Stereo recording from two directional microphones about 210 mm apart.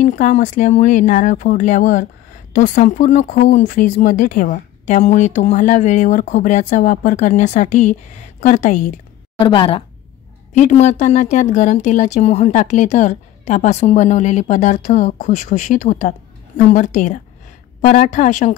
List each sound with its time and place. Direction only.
0.0 s speech: 35° left (ahead or behind)
9.4 s speech: 25° left (ahead or behind)